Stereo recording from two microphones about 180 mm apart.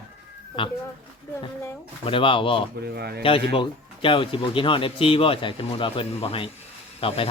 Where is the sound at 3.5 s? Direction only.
30° left (ahead or behind).